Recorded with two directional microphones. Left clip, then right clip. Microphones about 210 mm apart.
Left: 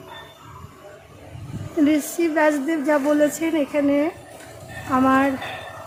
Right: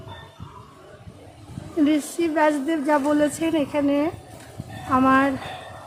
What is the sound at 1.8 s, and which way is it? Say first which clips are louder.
A woman's voice: left 2 dB; centre (ahead or behind).